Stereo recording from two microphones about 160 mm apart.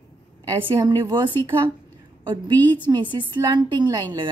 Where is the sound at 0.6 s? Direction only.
30° right (ahead or behind).